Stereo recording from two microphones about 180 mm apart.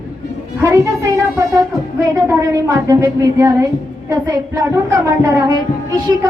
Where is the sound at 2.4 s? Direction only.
20° right (ahead or behind).